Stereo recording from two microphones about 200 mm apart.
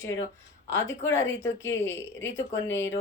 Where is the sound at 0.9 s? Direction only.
10° left (ahead or behind).